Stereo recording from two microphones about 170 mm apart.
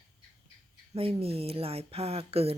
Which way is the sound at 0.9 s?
35° right (ahead or behind).